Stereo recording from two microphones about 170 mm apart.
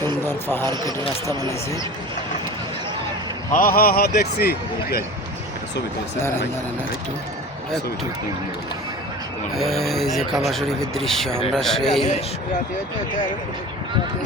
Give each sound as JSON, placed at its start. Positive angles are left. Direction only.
{"t": 0.0, "sound": "speech", "side_deg": 15}
{"t": 3.5, "sound": "a man's voice", "side_deg": 60}
{"t": 6.1, "sound": "speech", "side_deg": 15}
{"t": 9.6, "sound": "speech", "side_deg": 0}